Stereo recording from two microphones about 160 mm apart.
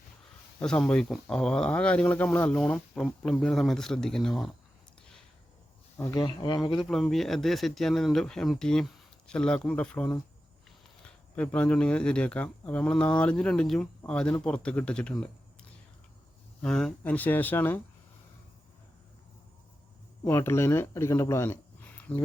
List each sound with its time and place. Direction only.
0.6 s speech: 5° left (ahead or behind)
6.0 s speech: 15° left (ahead or behind)
6.2 s speech: 30° left (ahead or behind)
6.7 s speech: centre (ahead or behind)
11.3 s speech: 5° left (ahead or behind)
16.6 s speech: 5° left (ahead or behind)
20.2 s speech: 15° left (ahead or behind)